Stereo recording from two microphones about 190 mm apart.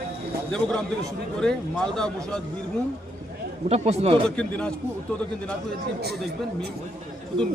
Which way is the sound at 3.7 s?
35° right (ahead or behind).